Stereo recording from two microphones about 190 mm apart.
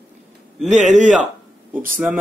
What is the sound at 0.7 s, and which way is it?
Speech, 40° right (ahead or behind).